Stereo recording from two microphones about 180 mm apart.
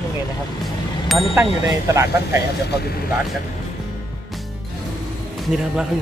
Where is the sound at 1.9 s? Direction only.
15° right (ahead or behind).